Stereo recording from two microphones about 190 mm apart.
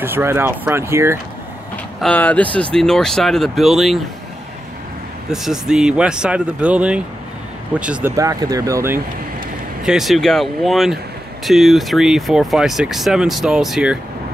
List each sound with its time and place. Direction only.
0.0 s speech: 10° right (ahead or behind)
2.0 s speech: 5° left (ahead or behind)
5.3 s speech: centre (ahead or behind)
8.2 s speech: 20° right (ahead or behind)
9.8 s speech: centre (ahead or behind)